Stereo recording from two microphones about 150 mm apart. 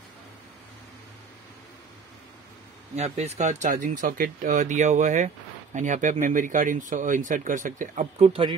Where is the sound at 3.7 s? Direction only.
60° right (ahead or behind).